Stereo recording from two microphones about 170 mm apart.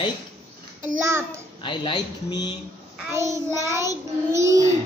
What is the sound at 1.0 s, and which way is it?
Child singing, 15° right (ahead or behind).